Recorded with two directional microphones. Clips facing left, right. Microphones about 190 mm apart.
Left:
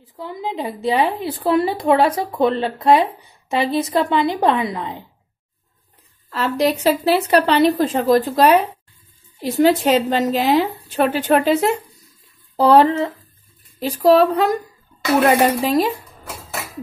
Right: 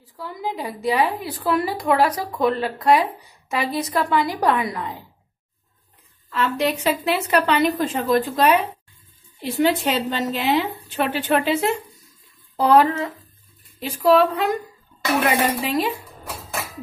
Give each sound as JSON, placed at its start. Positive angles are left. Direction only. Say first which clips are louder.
{"t": 0.1, "sound": "a woman's voice", "louder": "left 2 dB", "side_deg": 20}
{"t": 6.3, "sound": "a woman's voice", "louder": "left 3 dB", "side_deg": 35}
{"t": 12.5, "sound": "a woman's voice", "louder": "left 3 dB", "side_deg": 30}